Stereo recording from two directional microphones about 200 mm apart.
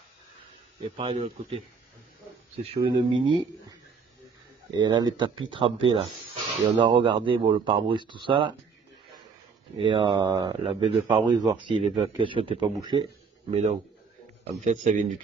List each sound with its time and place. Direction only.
0.9 s a man's voice: 30° right (ahead or behind)
4.6 s a man's voice: 20° right (ahead or behind)
9.8 s a man's voice: 25° right (ahead or behind)